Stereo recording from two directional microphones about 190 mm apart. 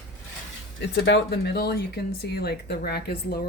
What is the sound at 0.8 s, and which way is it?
Speech, 65° left (ahead or behind).